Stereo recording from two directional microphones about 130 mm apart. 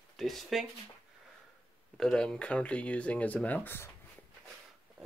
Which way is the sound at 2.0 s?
5° left (ahead or behind).